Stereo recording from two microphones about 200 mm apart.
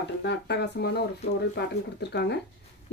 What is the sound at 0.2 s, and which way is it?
Speech, 60° left (ahead or behind).